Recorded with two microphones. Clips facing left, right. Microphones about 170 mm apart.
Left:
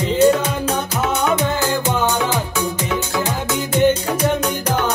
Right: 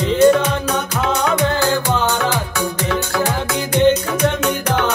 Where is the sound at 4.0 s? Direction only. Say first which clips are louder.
Even; 30° left (ahead or behind).